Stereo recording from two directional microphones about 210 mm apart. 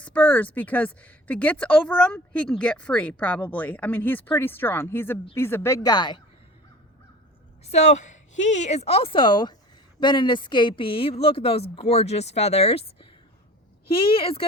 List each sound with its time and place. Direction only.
0.0 s speech: 5° left (ahead or behind)
7.6 s a woman's voice: 30° left (ahead or behind)